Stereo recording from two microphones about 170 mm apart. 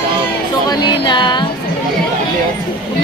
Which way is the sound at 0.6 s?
25° left (ahead or behind).